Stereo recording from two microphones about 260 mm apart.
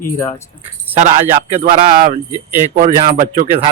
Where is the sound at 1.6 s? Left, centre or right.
Right.